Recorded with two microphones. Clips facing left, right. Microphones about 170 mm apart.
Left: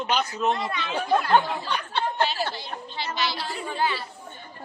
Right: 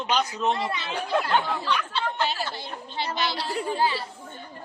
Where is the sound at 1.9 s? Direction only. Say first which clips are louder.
Left 2 dB; 55° left (ahead or behind).